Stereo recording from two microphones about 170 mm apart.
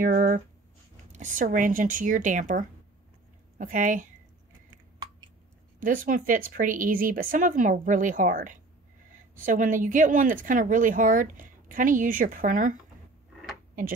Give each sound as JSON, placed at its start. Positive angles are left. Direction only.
{"t": 0.0, "sound": "speech", "side_deg": -60}
{"t": 1.1, "sound": "speech", "side_deg": -50}
{"t": 5.8, "sound": "speech", "side_deg": -50}